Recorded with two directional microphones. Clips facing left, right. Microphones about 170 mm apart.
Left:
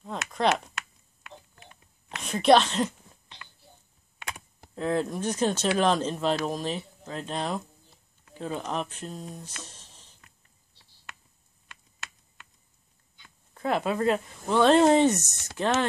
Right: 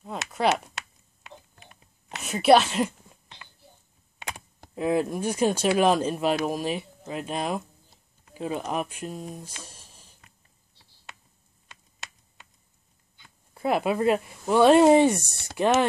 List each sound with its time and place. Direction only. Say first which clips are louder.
0.3 s a sound: right 1 dB; 5° right (ahead or behind)
2.2 s speech: right 1 dB; 5° right (ahead or behind)
4.7 s speech: right 3 dB; 10° right (ahead or behind)
13.6 s speech: right 2 dB; 10° right (ahead or behind)
15.2 s speech: right 3 dB; 35° right (ahead or behind)
15.5 s speech: right 4 dB; 15° right (ahead or behind)